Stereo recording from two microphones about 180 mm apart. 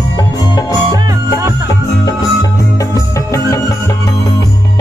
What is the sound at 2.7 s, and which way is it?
Music, 15° left (ahead or behind).